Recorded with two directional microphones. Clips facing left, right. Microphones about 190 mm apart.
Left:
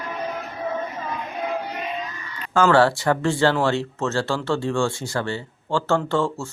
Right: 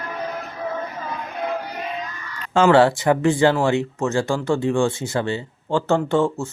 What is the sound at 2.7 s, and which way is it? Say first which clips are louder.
Speech: right 3 dB; 20° right (ahead or behind).